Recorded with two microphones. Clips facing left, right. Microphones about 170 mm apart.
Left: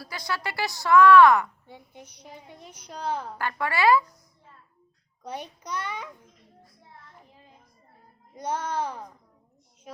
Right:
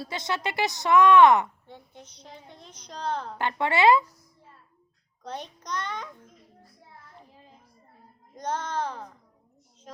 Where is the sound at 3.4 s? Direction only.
25° right (ahead or behind).